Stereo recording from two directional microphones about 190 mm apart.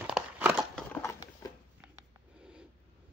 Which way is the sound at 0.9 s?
10° left (ahead or behind).